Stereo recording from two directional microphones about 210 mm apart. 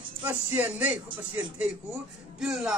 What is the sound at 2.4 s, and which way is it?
Speech, centre (ahead or behind).